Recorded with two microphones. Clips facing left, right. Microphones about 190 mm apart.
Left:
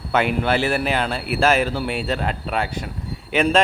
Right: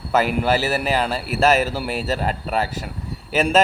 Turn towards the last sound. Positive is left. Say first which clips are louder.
# left 1 dB
turn(degrees=0)  # may be behind; listen again after turning